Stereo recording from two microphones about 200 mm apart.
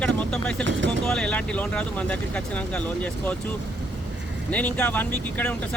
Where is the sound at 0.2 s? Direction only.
5° left (ahead or behind).